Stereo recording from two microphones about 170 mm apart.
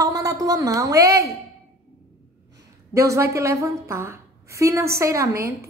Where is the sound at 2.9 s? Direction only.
15° right (ahead or behind).